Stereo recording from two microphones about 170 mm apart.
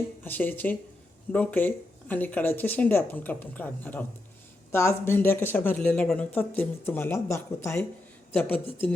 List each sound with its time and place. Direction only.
0.3 s speech: 10° left (ahead or behind)